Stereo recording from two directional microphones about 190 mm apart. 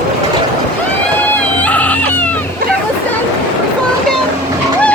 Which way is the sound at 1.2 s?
10° left (ahead or behind).